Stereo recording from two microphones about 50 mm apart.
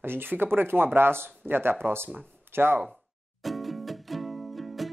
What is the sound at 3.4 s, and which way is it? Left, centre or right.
Music, centre.